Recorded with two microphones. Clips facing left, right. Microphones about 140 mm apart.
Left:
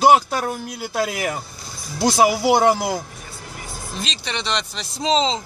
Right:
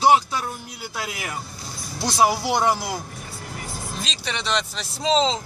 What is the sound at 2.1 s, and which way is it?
Speech, 80° left.